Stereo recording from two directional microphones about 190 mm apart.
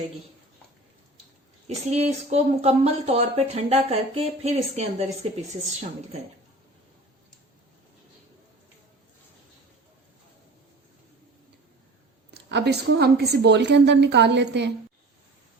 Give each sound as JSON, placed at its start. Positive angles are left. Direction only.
{"t": 1.6, "sound": "speech", "side_deg": -35}
{"t": 12.5, "sound": "a woman's voice", "side_deg": -60}